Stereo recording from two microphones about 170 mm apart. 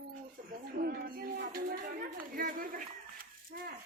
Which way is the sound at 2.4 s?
55° right (ahead or behind).